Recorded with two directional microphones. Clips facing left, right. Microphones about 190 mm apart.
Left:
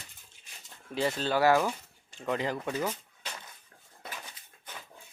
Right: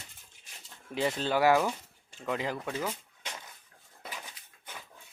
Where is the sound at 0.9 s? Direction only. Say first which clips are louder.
Even; 15° right (ahead or behind).